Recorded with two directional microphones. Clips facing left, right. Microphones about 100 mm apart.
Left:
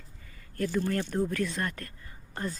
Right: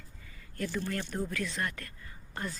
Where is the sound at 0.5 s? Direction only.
40° left (ahead or behind).